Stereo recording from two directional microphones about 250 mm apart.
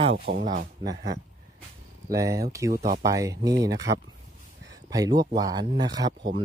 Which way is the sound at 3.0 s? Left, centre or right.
Centre.